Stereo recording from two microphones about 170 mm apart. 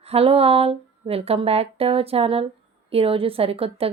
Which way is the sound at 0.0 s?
35° right (ahead or behind).